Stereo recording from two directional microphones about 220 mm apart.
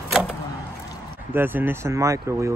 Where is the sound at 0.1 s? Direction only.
5° right (ahead or behind).